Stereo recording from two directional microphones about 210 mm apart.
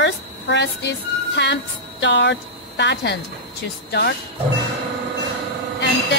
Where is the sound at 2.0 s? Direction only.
55° left (ahead or behind).